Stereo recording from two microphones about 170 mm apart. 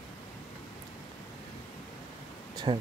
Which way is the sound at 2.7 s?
30° right (ahead or behind).